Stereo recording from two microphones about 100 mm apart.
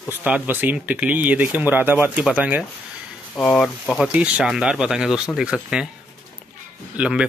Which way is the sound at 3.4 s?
5° left (ahead or behind).